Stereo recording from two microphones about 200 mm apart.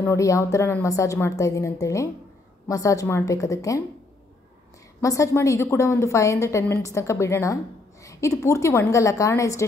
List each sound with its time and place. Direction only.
0.0 s a woman's voice: 15° left (ahead or behind)
5.0 s a woman's voice: 15° left (ahead or behind)